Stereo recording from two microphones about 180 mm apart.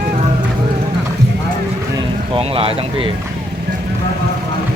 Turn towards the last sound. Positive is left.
turn(degrees=-30)  # may be behind; listen again after turning